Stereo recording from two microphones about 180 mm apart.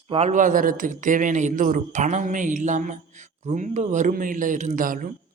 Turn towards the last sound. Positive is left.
turn(degrees=-50)  # may be behind; listen again after turning